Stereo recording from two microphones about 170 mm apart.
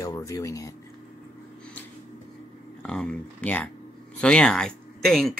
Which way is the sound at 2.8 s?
5° left (ahead or behind).